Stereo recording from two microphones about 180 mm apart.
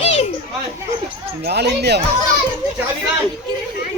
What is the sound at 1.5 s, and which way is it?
Speech, 65° right (ahead or behind).